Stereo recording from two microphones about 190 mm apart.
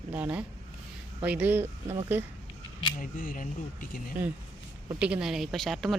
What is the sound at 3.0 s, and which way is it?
Speech, 45° left (ahead or behind).